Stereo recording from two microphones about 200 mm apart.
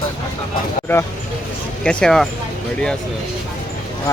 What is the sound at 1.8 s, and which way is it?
Speech, 5° left (ahead or behind).